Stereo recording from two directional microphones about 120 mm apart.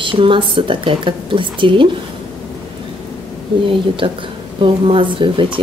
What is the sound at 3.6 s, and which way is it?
A woman's voice, 45° right (ahead or behind).